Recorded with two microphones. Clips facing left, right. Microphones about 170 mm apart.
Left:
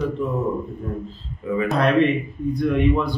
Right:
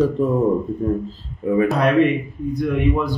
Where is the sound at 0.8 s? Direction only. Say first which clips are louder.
Right 9 dB; 35° right (ahead or behind).